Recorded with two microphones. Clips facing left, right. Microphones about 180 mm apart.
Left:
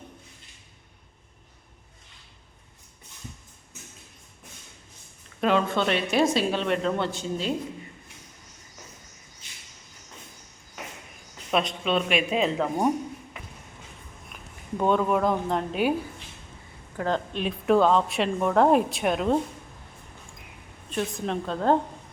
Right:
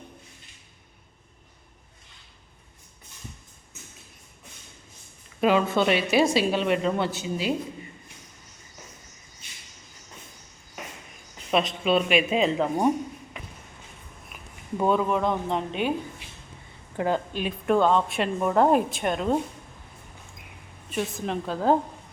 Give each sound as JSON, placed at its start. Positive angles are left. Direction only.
{"t": 5.4, "sound": "a woman's voice", "side_deg": -5}
{"t": 11.5, "sound": "a woman's voice", "side_deg": -5}
{"t": 14.3, "sound": "speech", "side_deg": -5}
{"t": 17.0, "sound": "speech", "side_deg": -20}
{"t": 17.3, "sound": "a woman's voice", "side_deg": 0}
{"t": 20.9, "sound": "a woman's voice", "side_deg": 0}